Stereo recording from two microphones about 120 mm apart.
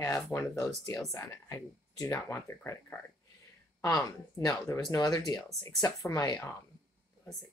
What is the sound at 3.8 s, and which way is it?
Speech, 25° left (ahead or behind).